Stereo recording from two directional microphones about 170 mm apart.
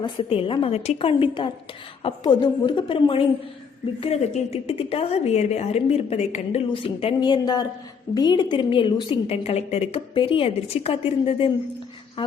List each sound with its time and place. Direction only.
0.0 s a woman's voice: 35° left (ahead or behind)
9.2 s a woman's voice: 40° left (ahead or behind)